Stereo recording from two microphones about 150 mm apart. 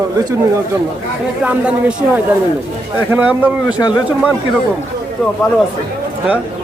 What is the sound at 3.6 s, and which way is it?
Speech, 30° left (ahead or behind).